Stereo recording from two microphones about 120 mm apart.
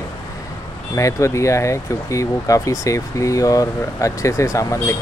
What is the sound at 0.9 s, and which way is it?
Speech, 25° left (ahead or behind).